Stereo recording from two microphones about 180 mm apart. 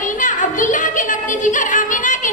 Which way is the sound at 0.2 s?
45° left (ahead or behind).